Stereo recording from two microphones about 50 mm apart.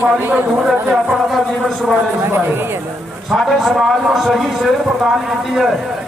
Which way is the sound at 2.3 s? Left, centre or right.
Right.